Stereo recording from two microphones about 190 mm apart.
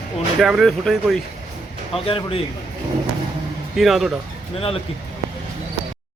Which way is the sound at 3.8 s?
Centre (ahead or behind).